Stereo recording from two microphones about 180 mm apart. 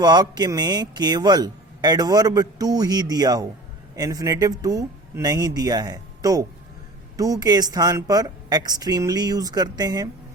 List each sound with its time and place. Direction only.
0.0 s speech: 20° right (ahead or behind)